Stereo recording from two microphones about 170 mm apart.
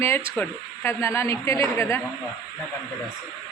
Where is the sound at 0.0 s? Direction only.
10° left (ahead or behind).